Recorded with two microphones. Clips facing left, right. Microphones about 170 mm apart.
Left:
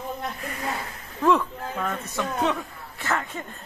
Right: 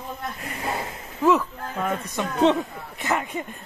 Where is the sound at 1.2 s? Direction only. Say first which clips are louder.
Right 1 dB; 5° right (ahead or behind).